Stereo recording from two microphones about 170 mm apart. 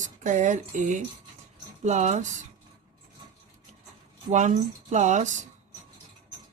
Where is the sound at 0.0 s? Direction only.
45° right (ahead or behind).